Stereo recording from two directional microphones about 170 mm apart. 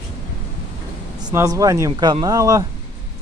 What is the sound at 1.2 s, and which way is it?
Speech, 20° right (ahead or behind).